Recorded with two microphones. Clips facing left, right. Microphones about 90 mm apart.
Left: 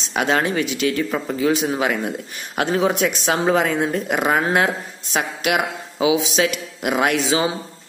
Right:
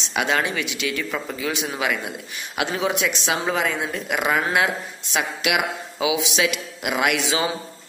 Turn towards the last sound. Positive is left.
turn(degrees=30)  # may be behind; listen again after turning